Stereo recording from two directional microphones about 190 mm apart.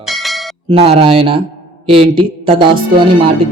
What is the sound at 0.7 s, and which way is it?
Speech, 30° right (ahead or behind).